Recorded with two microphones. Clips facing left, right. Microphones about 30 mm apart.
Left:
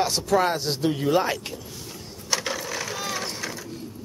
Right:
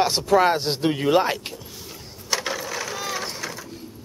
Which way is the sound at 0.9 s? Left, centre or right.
Right.